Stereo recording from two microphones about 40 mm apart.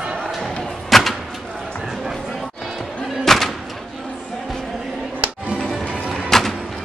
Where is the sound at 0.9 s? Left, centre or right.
Centre.